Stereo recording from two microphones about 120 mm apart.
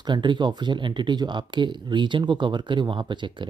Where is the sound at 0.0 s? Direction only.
40° right (ahead or behind).